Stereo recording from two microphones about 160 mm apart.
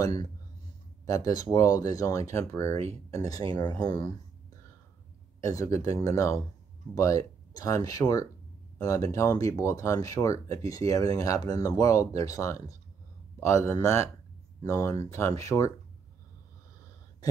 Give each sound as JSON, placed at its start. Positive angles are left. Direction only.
{"t": 0.0, "sound": "speech", "side_deg": 20}
{"t": 2.7, "sound": "speech", "side_deg": -40}
{"t": 3.1, "sound": "speech", "side_deg": 20}
{"t": 5.4, "sound": "a man's voice", "side_deg": 20}